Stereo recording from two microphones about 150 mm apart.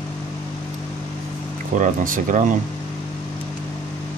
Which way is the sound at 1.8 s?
60° right (ahead or behind).